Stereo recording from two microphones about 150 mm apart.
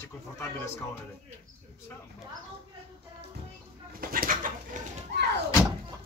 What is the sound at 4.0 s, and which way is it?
Bird, 70° right (ahead or behind).